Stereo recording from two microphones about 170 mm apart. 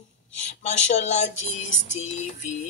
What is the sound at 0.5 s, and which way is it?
Speech, 40° left (ahead or behind).